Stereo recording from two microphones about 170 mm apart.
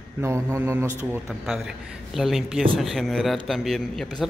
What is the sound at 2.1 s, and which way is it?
A man's voice, centre (ahead or behind).